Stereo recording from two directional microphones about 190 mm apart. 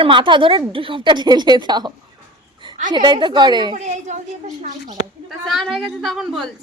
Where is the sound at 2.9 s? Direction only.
25° right (ahead or behind).